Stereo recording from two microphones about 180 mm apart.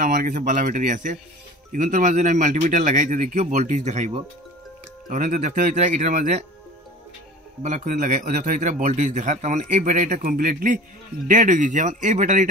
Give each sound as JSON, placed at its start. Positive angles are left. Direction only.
{"t": 0.0, "sound": "a man's voice", "side_deg": -50}
{"t": 5.1, "sound": "a man's voice", "side_deg": -45}
{"t": 7.6, "sound": "a man's voice", "side_deg": -40}